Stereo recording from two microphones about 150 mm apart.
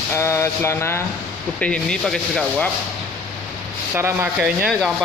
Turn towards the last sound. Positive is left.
turn(degrees=0)  # may be behind; listen again after turning